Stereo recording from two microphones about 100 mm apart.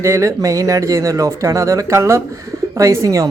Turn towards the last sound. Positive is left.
turn(degrees=-30)  # may be behind; listen again after turning